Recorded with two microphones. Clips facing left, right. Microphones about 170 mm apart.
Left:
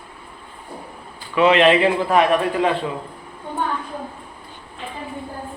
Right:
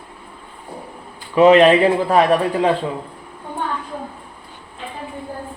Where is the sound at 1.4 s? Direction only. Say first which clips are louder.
Right 4 dB; 40° right (ahead or behind).